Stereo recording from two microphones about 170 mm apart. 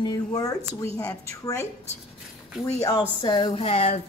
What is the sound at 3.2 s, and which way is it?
Speech, 30° left (ahead or behind).